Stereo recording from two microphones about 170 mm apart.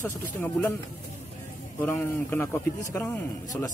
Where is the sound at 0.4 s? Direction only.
10° left (ahead or behind).